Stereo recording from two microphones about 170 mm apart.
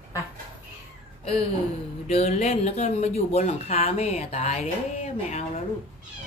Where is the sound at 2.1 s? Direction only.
40° left (ahead or behind).